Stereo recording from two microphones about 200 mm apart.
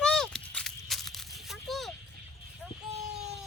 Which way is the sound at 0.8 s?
Centre (ahead or behind).